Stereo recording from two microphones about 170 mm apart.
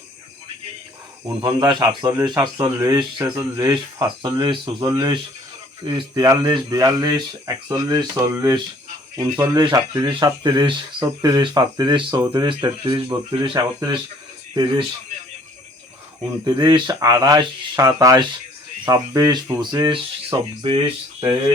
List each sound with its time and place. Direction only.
1.4 s speech: 25° right (ahead or behind)
16.4 s speech: 25° right (ahead or behind)